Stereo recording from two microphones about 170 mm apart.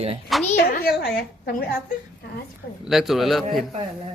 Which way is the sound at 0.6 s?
65° left (ahead or behind).